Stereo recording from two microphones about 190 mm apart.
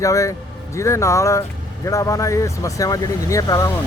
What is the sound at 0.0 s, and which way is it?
Speech, 15° left (ahead or behind).